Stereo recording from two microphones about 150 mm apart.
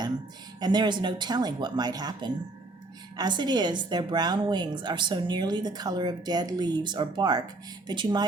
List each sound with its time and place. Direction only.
0.6 s a woman's voice: 30° right (ahead or behind)